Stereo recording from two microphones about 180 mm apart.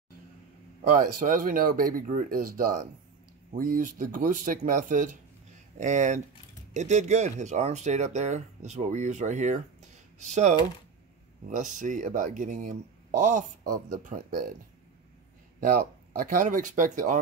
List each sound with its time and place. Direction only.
0.9 s speech: 50° right (ahead or behind)
15.6 s speech: 50° right (ahead or behind)